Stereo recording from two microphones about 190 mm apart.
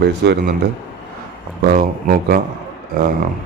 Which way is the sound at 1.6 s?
50° right (ahead or behind).